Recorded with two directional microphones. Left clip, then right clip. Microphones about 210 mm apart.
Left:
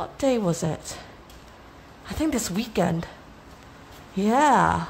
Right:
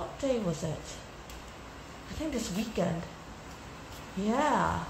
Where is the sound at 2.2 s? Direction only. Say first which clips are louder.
Left 8 dB; 50° left (ahead or behind).